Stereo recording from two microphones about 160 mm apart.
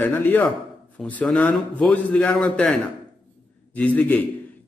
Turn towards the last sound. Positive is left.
turn(degrees=10)  # may be behind; listen again after turning